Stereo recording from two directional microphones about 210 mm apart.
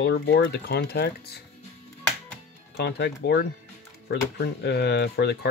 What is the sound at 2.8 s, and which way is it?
Speech, 50° left (ahead or behind).